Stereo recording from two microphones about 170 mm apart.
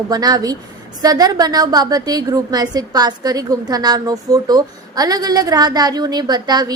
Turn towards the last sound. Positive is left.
turn(degrees=-25)  # may be behind; listen again after turning